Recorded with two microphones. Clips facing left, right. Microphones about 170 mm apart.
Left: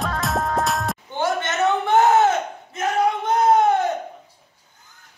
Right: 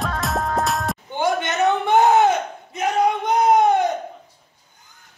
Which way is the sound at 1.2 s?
15° right (ahead or behind).